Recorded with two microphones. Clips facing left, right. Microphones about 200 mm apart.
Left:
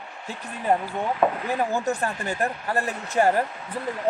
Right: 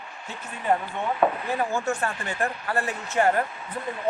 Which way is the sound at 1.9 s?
35° left (ahead or behind).